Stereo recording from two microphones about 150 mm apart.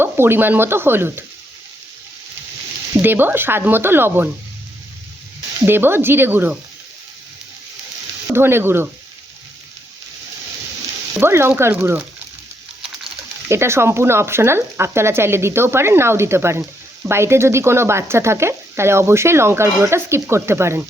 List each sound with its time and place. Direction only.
0.0 s speech: 15° right (ahead or behind)
3.0 s speech: 15° right (ahead or behind)
5.6 s speech: 15° right (ahead or behind)
8.3 s speech: 15° right (ahead or behind)
11.2 s speech: 15° right (ahead or behind)
13.5 s speech: 15° right (ahead or behind)